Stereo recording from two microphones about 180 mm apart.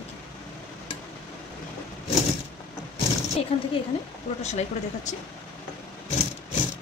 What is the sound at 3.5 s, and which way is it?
Speech, 35° left (ahead or behind).